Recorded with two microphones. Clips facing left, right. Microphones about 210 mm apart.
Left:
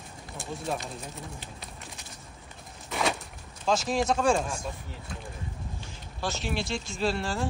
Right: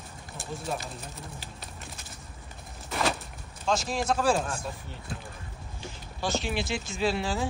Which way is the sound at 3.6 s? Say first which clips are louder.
Left 2 dB; centre (ahead or behind).